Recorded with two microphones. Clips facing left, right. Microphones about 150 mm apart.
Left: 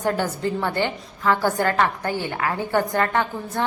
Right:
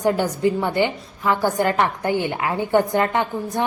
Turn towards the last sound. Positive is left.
turn(degrees=-15)  # may be behind; listen again after turning